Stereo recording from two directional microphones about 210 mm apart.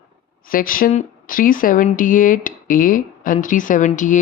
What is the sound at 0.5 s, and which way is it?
Speech, 40° left (ahead or behind).